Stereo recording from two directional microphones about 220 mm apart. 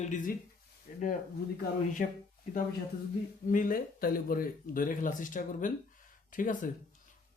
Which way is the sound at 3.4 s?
40° left (ahead or behind).